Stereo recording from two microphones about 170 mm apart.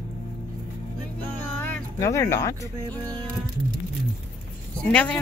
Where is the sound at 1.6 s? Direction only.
15° left (ahead or behind).